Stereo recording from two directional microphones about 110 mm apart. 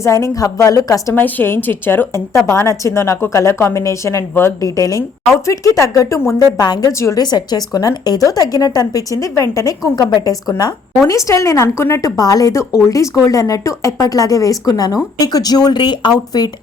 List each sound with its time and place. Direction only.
0.0 s a woman's voice: 30° left (ahead or behind)
1.1 s a woman's voice: 15° left (ahead or behind)
7.2 s a woman's voice: 40° left (ahead or behind)